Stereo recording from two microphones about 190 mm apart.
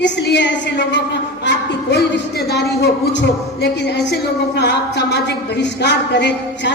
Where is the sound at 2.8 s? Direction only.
65° left (ahead or behind).